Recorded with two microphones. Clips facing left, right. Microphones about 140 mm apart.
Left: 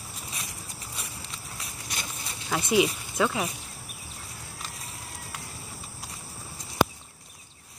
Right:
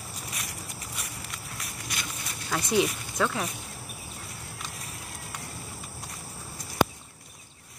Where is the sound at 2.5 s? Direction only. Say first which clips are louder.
Left 2 dB; 5° left (ahead or behind).